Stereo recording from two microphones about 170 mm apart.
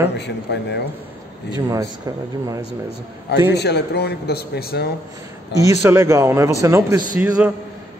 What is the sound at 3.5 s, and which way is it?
Speech, 80° left.